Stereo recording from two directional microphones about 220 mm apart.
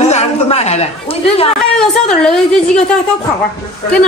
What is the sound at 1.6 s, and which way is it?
A woman's voice, centre (ahead or behind).